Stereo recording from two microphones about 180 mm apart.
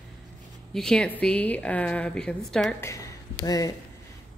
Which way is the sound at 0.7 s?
5° left (ahead or behind).